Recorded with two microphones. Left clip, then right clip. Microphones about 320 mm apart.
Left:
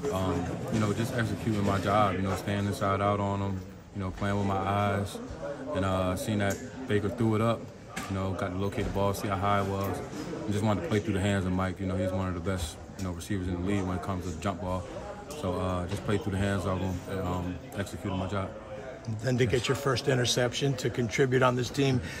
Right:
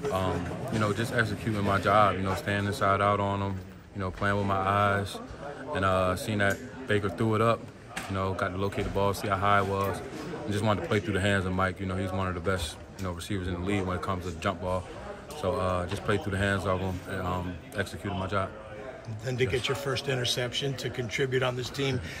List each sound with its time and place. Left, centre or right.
0.7 s speech: centre
19.2 s speech: left